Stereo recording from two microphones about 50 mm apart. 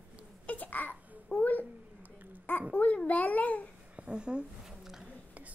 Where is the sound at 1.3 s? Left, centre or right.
Left.